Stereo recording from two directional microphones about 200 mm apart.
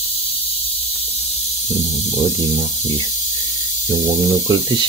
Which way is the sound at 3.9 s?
25° right (ahead or behind).